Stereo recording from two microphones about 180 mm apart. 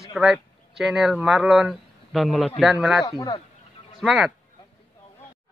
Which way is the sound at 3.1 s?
20° left (ahead or behind).